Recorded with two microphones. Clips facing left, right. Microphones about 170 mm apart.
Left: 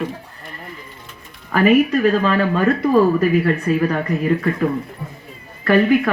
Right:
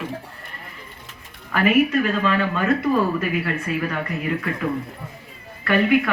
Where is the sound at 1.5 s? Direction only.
40° left (ahead or behind).